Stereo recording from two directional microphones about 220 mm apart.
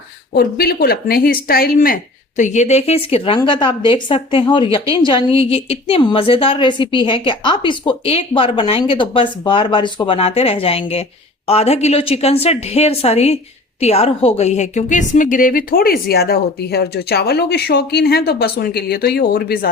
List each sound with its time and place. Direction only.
0.3 s a woman's voice: 45° left (ahead or behind)